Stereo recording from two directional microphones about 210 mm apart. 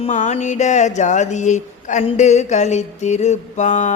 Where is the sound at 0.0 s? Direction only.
35° left (ahead or behind).